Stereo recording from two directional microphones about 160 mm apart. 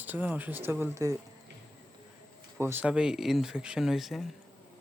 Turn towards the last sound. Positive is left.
turn(degrees=0)  # may be behind; listen again after turning